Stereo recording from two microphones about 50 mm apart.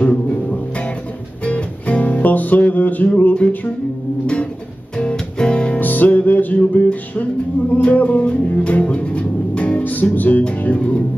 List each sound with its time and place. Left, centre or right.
0.0 s music: left
4.9 s music: centre
5.8 s music: left
10.6 s speech: left